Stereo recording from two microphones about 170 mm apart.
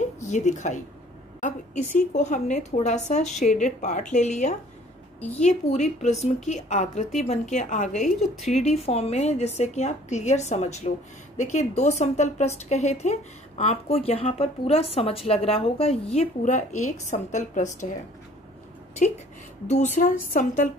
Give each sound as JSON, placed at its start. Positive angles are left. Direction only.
{"t": 0.0, "sound": "a sound", "side_deg": 45}
{"t": 1.4, "sound": "a woman's voice", "side_deg": 45}
{"t": 19.7, "sound": "a woman's voice", "side_deg": 45}